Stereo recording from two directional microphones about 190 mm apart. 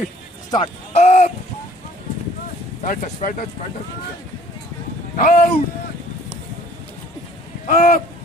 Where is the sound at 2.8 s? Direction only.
45° left (ahead or behind).